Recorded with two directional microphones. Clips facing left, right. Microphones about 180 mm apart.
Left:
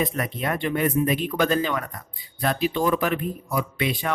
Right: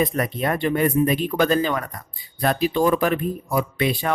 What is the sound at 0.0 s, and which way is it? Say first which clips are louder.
Speech: right 4 dB; 40° right (ahead or behind).